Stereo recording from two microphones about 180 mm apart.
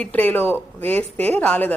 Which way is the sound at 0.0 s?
10° left (ahead or behind).